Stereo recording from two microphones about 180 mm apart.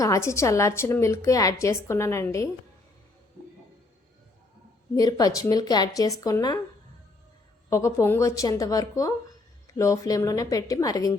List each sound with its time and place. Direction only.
0.0 s a woman's voice: 15° left (ahead or behind)
4.9 s speech: 20° left (ahead or behind)
7.7 s a woman's voice: 15° left (ahead or behind)